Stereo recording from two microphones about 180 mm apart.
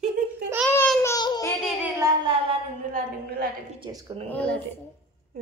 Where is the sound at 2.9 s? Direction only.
55° right (ahead or behind).